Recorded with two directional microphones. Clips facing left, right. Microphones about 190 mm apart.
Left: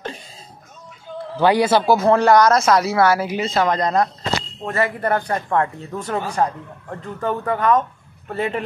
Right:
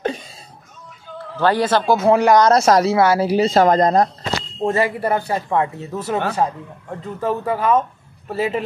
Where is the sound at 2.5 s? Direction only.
40° right (ahead or behind).